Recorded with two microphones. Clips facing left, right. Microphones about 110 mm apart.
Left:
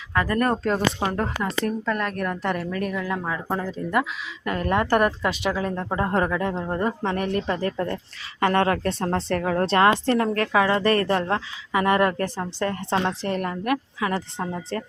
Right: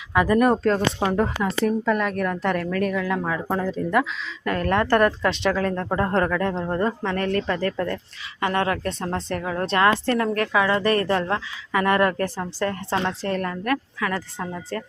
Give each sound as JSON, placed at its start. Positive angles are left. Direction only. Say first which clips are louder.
{"t": 0.1, "sound": "speech", "louder": "right 4 dB", "side_deg": -10}
{"t": 8.4, "sound": "speech", "louder": "left 2 dB", "side_deg": 40}
{"t": 11.7, "sound": "a woman's voice", "louder": "even", "side_deg": 20}